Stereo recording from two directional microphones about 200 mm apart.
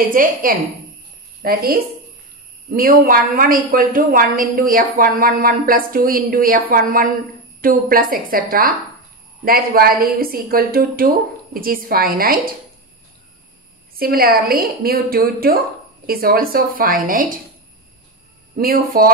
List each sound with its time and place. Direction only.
0.1 s a woman's voice: 45° right (ahead or behind)
13.9 s a woman's voice: 50° right (ahead or behind)
18.6 s a woman's voice: 45° right (ahead or behind)